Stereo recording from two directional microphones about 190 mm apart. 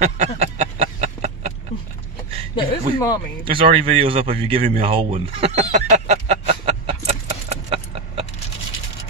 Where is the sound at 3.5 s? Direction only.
30° right (ahead or behind).